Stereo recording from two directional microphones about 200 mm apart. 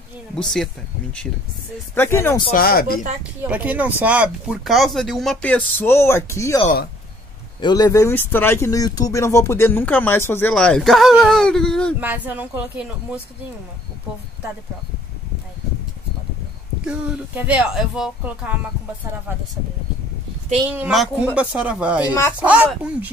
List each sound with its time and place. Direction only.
0.4 s speech: centre (ahead or behind)
2.0 s speech: 10° left (ahead or behind)
2.5 s speech: 50° left (ahead or behind)
3.4 s speech: 5° right (ahead or behind); by 6.6 s 15° left (ahead or behind)
7.6 s speech: 20° left (ahead or behind); by 11.9 s 5° left (ahead or behind)
12.0 s speech: 10° right (ahead or behind)
16.8 s speech: 5° right (ahead or behind)
20.6 s speech: 10° right (ahead or behind)
22.0 s speech: 15° left (ahead or behind)
22.4 s speech: 5° right (ahead or behind)